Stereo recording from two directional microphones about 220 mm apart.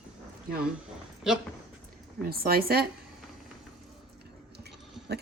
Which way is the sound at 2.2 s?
45° right (ahead or behind).